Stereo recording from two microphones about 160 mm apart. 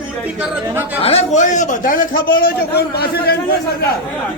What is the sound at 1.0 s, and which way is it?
A man's voice, 45° left (ahead or behind).